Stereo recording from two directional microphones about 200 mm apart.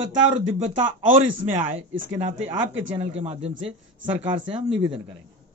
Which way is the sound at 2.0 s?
75° right (ahead or behind).